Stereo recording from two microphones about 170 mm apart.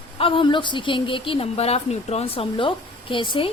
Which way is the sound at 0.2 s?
30° left (ahead or behind).